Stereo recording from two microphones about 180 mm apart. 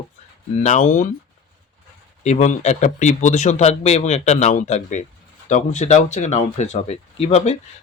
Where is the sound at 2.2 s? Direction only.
40° left (ahead or behind).